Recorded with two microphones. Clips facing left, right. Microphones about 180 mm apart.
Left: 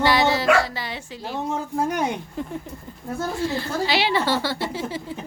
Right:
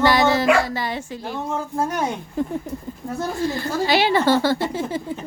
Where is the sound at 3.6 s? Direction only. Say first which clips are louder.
Right 6 dB; 45° right (ahead or behind).